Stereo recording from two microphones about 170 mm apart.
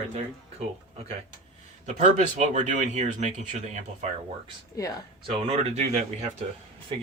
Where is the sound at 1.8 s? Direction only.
45° right (ahead or behind).